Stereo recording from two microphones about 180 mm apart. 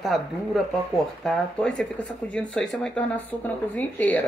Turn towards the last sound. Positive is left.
turn(degrees=10)  # may be behind; listen again after turning